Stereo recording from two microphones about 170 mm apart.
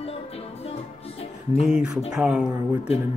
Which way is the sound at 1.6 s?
5° right (ahead or behind).